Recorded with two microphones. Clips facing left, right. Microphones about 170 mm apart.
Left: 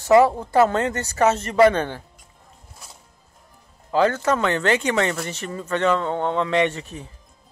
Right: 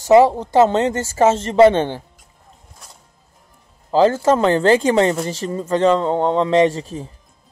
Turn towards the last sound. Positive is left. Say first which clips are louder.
# right 6 dB
turn(degrees=-35)  # may be behind; listen again after turning